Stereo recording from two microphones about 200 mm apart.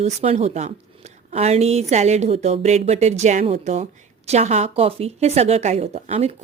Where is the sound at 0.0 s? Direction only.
35° right (ahead or behind).